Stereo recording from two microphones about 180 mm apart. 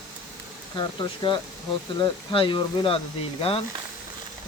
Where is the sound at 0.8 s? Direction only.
25° left (ahead or behind).